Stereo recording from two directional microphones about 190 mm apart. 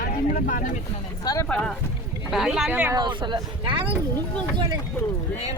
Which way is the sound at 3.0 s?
25° right (ahead or behind).